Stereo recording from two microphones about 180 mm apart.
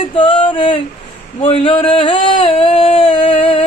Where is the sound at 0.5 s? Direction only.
30° left (ahead or behind).